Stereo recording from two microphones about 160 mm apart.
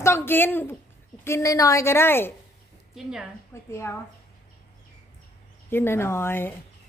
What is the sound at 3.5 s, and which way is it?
Speech, 15° left (ahead or behind).